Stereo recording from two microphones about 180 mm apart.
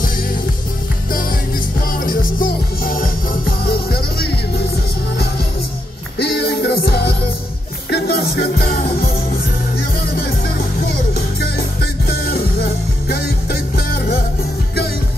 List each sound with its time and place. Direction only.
1.9 s music: 50° left (ahead or behind)
6.1 s music: 65° left (ahead or behind)
11.4 s music: 60° left (ahead or behind)